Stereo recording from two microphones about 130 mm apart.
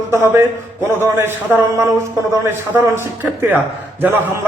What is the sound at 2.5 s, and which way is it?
Speech, 15° right (ahead or behind).